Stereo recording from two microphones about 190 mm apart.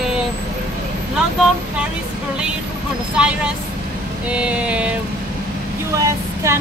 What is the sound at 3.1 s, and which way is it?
Speech, 5° right (ahead or behind).